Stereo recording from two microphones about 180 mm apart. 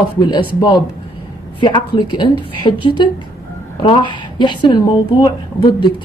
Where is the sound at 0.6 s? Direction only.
20° left (ahead or behind).